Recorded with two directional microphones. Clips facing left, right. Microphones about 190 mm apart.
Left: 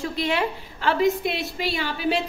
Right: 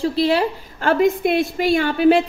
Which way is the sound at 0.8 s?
50° right (ahead or behind).